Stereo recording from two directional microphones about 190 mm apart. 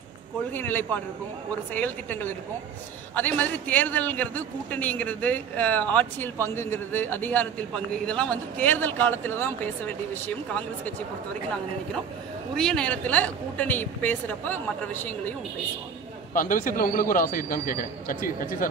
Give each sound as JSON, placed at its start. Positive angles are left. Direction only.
{"t": 0.5, "sound": "a man's voice", "side_deg": 10}
{"t": 12.5, "sound": "a man's voice", "side_deg": 5}
{"t": 16.3, "sound": "speech", "side_deg": 45}